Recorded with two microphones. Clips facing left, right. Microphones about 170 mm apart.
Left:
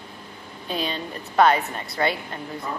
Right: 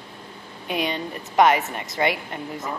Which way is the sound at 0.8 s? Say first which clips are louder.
Right 3 dB; 15° right (ahead or behind).